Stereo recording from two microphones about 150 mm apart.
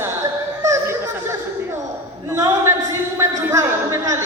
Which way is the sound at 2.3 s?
20° right (ahead or behind).